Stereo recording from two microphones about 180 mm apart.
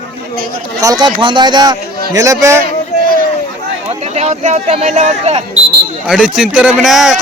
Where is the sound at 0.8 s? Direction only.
20° right (ahead or behind).